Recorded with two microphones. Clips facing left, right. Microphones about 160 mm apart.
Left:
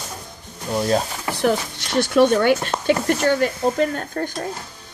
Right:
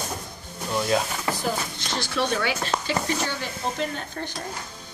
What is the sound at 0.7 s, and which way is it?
Speech, 35° left (ahead or behind).